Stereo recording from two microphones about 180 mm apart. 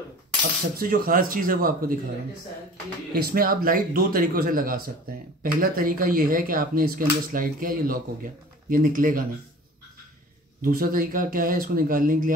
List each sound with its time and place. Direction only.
0.7 s speech: 55° right (ahead or behind)
3.1 s speech: 55° right (ahead or behind)
10.6 s speech: 50° right (ahead or behind)